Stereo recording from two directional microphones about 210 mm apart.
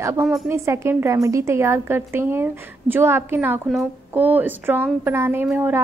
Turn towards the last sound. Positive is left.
turn(degrees=-10)  # may be behind; listen again after turning